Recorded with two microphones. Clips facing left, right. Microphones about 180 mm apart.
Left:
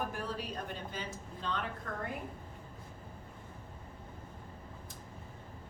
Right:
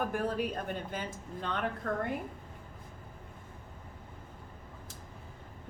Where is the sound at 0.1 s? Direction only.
55° right (ahead or behind).